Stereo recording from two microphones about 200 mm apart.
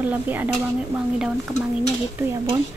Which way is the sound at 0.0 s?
10° right (ahead or behind).